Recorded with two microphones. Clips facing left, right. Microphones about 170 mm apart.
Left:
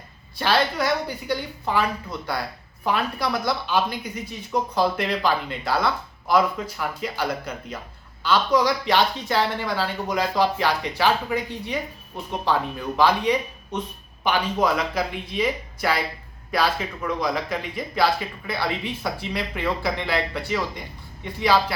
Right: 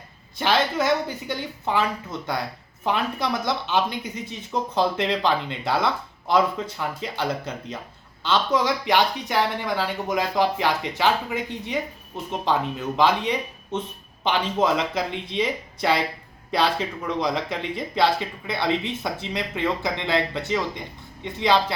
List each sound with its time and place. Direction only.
0.3 s speech: 20° right (ahead or behind)
13.0 s speech: 20° right (ahead or behind)